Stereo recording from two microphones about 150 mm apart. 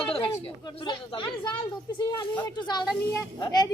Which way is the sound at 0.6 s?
30° left (ahead or behind).